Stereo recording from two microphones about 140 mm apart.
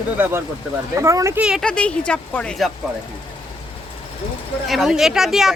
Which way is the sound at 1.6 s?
5° left (ahead or behind).